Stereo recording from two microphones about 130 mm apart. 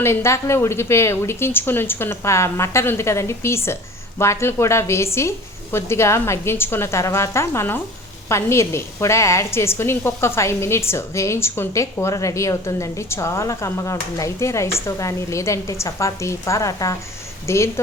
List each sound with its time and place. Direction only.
0.0 s a woman's voice: 20° left (ahead or behind)